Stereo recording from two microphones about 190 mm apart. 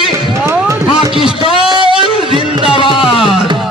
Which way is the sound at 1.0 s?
25° right (ahead or behind).